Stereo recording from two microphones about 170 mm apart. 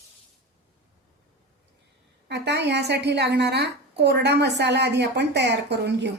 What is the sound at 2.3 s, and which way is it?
A woman's voice, 90° right.